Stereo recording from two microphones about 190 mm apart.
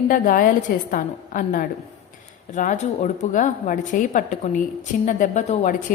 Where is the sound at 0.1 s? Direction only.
45° left (ahead or behind).